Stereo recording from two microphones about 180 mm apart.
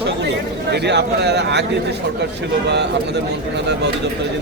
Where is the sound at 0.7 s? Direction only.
70° right (ahead or behind).